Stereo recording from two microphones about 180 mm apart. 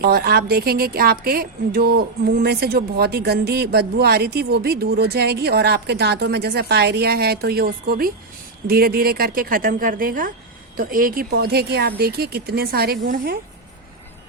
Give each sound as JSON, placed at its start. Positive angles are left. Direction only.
{"t": 0.0, "sound": "a woman's voice", "side_deg": -60}